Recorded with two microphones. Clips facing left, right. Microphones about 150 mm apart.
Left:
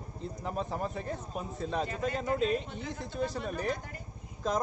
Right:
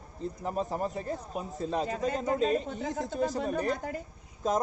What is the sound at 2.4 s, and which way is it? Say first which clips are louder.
Speech: right 3 dB; 40° right (ahead or behind).